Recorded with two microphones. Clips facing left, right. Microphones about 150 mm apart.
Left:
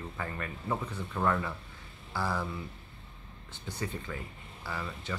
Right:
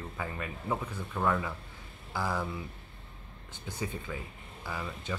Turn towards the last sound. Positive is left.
turn(degrees=-15)  # may be behind; listen again after turning